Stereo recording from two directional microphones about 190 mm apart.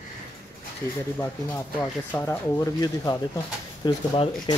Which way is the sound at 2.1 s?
10° left (ahead or behind).